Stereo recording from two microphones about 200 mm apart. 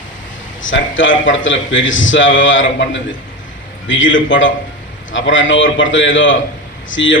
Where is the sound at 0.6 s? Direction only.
70° left (ahead or behind).